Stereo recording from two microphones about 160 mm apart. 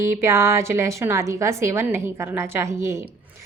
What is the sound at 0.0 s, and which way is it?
A woman's voice, 15° right (ahead or behind).